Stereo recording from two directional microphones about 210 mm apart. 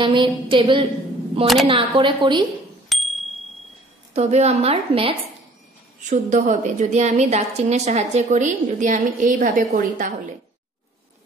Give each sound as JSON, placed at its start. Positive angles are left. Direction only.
{"t": 0.0, "sound": "a woman's voice", "side_deg": -25}
{"t": 2.9, "sound": "bicycle bell", "side_deg": 0}
{"t": 4.1, "sound": "a woman's voice", "side_deg": -30}